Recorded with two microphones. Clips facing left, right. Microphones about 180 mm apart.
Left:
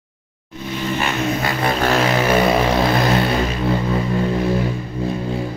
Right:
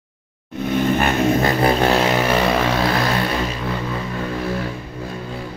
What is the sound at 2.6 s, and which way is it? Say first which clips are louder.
Vehicle: left 2 dB; 15° left (ahead or behind).